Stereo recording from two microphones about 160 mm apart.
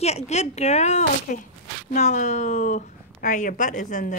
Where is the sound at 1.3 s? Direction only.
60° left (ahead or behind).